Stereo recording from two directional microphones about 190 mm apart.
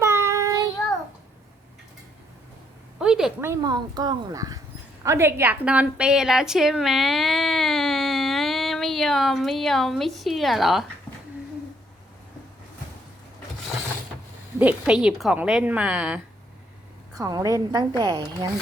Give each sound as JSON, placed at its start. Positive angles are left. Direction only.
{"t": 0.0, "sound": "child singing", "side_deg": -15}
{"t": 3.0, "sound": "a sound", "side_deg": -5}
{"t": 3.5, "sound": "a woman's voice", "side_deg": -20}
{"t": 14.6, "sound": "a woman's voice", "side_deg": -5}
{"t": 17.2, "sound": "a woman's voice", "side_deg": -20}